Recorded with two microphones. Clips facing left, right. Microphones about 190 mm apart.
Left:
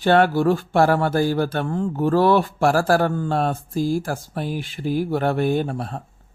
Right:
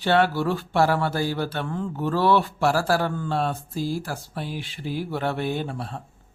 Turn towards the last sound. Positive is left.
turn(degrees=45)  # may be behind; listen again after turning